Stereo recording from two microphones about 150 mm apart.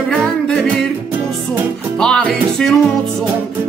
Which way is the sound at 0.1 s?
Centre (ahead or behind).